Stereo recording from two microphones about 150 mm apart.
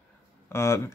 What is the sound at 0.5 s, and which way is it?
Speech, 15° left (ahead or behind).